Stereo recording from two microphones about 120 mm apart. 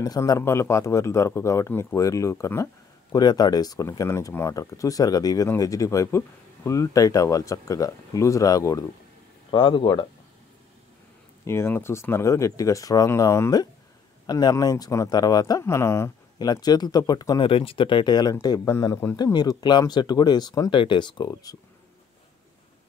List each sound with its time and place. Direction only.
0.0 s speech: 30° left (ahead or behind)
1.7 s speech: 15° left (ahead or behind)
2.0 s speech: 25° left (ahead or behind)
9.5 s speech: 45° left (ahead or behind)
11.4 s speech: 20° left (ahead or behind)
16.4 s speech: 35° left (ahead or behind)
17.5 s speech: 50° left (ahead or behind); by 19.1 s 20° left (ahead or behind)
19.1 s speech: 30° left (ahead or behind)
20.7 s speech: 45° left (ahead or behind)
21.3 s speech: 30° left (ahead or behind)